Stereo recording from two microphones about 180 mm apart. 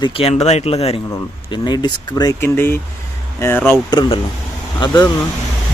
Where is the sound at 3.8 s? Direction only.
25° left (ahead or behind).